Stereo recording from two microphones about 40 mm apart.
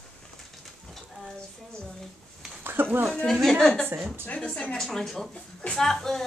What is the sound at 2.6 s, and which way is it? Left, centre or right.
Speech, right.